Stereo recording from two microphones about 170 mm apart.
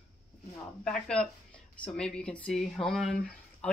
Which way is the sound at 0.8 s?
5° left (ahead or behind).